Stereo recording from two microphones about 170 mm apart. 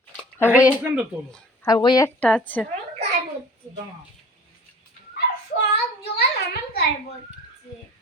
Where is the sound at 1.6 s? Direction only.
20° left (ahead or behind).